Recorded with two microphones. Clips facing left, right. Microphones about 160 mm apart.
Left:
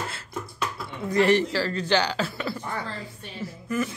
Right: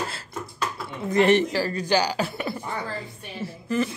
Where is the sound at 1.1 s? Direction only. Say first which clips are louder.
Right 2 dB; 20° right (ahead or behind).